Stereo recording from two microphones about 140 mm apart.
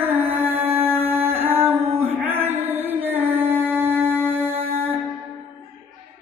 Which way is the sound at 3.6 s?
15° right (ahead or behind).